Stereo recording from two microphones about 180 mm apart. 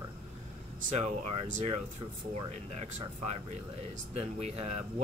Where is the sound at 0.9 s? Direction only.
40° right (ahead or behind).